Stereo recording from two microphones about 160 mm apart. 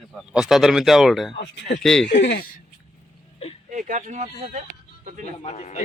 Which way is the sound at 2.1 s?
90° left.